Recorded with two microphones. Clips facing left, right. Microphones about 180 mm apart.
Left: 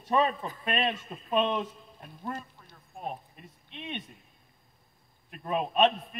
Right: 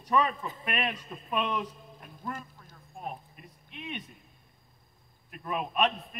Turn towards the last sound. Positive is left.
turn(degrees=30)  # may be behind; listen again after turning